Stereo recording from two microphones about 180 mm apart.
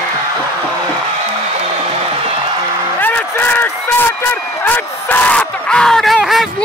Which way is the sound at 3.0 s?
10° left (ahead or behind).